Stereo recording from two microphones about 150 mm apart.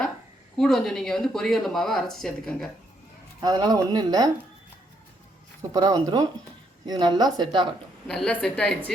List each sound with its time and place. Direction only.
0.5 s speech: 5° left (ahead or behind)
3.4 s speech: 30° right (ahead or behind)
5.7 s speech: 25° right (ahead or behind)
8.0 s a woman's voice: 5° left (ahead or behind)